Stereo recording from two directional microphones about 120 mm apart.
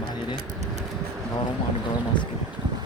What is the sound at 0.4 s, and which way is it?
Vehicle, 70° right (ahead or behind).